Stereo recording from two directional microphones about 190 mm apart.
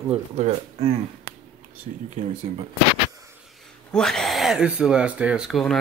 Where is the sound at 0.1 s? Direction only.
30° right (ahead or behind).